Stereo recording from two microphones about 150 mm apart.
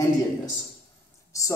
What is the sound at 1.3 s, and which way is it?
Speech, 20° left (ahead or behind).